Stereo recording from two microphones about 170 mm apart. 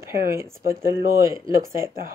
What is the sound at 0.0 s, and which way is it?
Speech, 15° right (ahead or behind).